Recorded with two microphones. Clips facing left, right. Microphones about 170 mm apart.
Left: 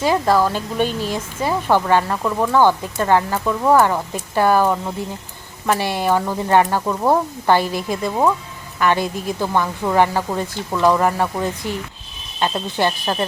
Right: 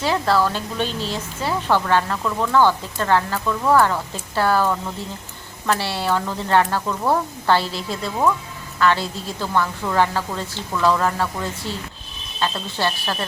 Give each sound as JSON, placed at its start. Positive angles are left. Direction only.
{"t": 0.0, "sound": "speech", "side_deg": 15}